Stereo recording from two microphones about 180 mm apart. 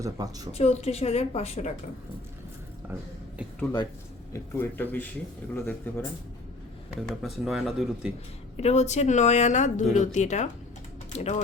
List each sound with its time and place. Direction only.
0.0 s speech: 20° right (ahead or behind)
0.5 s a woman's voice: 35° left (ahead or behind)
2.9 s speech: 15° right (ahead or behind)
4.3 s speech: 10° left (ahead or behind)
8.5 s a woman's voice: 40° left (ahead or behind)